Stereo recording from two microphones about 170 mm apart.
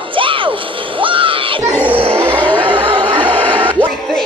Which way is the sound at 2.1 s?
10° right (ahead or behind).